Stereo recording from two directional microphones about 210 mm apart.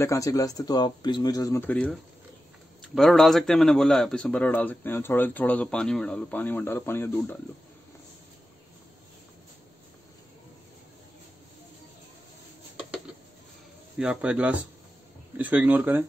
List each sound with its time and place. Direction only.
0.0 s a man's voice: 15° left (ahead or behind)
13.9 s a man's voice: 5° right (ahead or behind)